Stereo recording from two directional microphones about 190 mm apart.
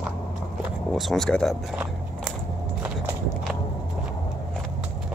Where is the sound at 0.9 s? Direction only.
Centre (ahead or behind).